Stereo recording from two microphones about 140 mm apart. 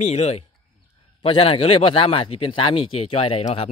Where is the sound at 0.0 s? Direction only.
50° left (ahead or behind).